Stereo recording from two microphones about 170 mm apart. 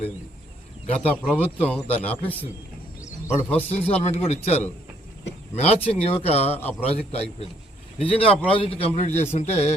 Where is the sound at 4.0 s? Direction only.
40° left (ahead or behind).